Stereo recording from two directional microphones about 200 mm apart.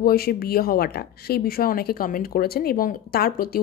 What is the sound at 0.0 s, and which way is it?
Speech, 50° left (ahead or behind).